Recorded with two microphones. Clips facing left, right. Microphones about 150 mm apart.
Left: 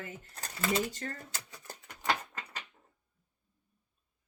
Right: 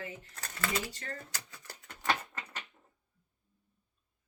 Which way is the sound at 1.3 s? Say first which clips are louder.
Left 1 dB; 20° left (ahead or behind).